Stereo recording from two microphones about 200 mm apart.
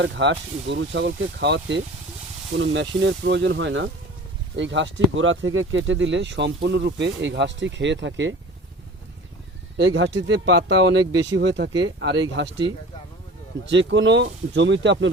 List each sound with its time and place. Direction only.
0.0 s speech: 65° right (ahead or behind)
9.7 s speech: 70° right (ahead or behind)
13.7 s speech: 65° right (ahead or behind)